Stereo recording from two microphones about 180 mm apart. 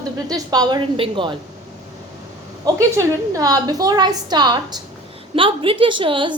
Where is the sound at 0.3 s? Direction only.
20° right (ahead or behind).